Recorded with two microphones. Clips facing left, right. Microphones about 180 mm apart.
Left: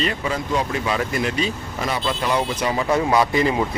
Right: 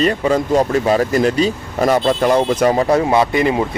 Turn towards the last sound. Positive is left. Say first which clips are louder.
# right 4 dB
turn(degrees=-25)  # may be behind; listen again after turning